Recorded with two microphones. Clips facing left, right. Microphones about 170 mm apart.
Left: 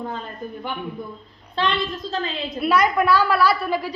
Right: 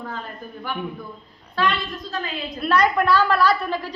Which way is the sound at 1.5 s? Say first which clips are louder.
Even; 25° left (ahead or behind).